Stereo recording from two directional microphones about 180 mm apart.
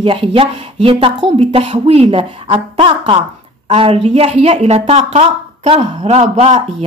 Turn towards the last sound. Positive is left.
turn(degrees=-40)  # may be behind; listen again after turning